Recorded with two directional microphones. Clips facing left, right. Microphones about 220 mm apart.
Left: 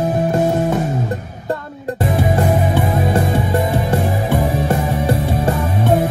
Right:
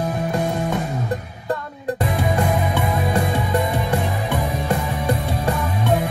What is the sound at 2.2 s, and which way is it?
Music, 45° left (ahead or behind).